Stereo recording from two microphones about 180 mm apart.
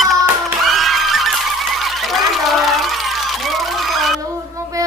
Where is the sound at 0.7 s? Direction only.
Centre (ahead or behind).